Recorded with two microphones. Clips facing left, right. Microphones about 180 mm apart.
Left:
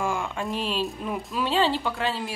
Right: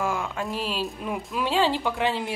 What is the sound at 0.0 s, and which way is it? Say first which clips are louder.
Speech: even; centre (ahead or behind).